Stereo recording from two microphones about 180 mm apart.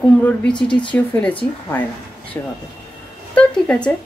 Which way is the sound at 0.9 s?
10° left (ahead or behind).